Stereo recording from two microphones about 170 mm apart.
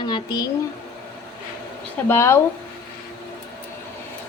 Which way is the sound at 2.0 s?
15° left (ahead or behind).